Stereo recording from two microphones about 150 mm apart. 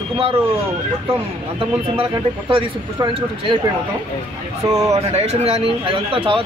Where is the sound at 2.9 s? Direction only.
30° right (ahead or behind).